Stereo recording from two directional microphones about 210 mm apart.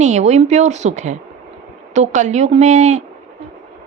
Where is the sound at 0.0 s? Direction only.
35° right (ahead or behind).